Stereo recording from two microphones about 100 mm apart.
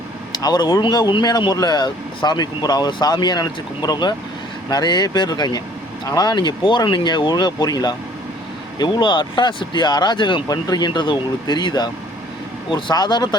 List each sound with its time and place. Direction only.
0.3 s speech: 45° left (ahead or behind)